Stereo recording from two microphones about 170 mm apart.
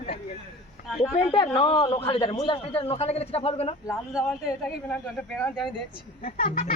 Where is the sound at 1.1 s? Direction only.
30° left (ahead or behind).